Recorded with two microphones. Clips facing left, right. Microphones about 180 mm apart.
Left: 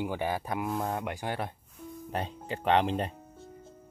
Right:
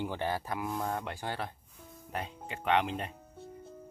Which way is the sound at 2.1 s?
35° left (ahead or behind).